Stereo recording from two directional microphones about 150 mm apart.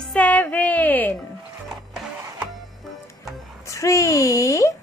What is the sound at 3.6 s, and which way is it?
A woman's voice, 20° left (ahead or behind).